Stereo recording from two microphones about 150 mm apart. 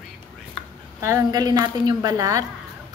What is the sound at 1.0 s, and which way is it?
A woman's voice, 20° right (ahead or behind).